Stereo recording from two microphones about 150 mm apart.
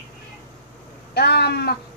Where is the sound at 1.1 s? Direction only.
90° left.